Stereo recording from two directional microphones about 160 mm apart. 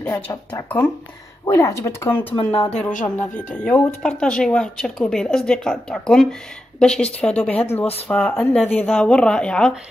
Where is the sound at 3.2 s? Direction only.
10° left (ahead or behind).